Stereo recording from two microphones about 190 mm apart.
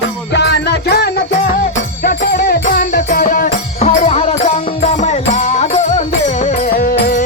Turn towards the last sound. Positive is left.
turn(degrees=50)  # may be behind; listen again after turning